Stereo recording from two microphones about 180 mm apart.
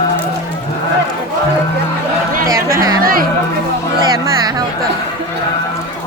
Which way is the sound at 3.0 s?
55° right (ahead or behind).